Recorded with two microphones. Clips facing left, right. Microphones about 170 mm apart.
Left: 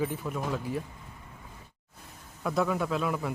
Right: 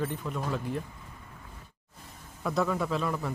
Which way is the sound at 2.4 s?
Centre (ahead or behind).